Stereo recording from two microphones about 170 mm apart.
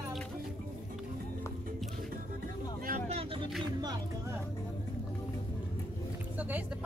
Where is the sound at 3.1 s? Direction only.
35° right (ahead or behind).